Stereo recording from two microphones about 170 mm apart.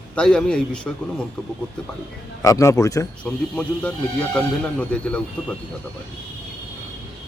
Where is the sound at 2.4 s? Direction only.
20° left (ahead or behind).